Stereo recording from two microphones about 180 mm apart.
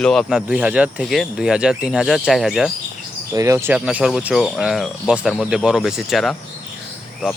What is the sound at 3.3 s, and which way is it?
Speech, 15° right (ahead or behind).